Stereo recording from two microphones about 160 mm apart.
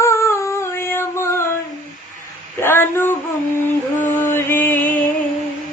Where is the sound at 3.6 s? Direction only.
15° left (ahead or behind).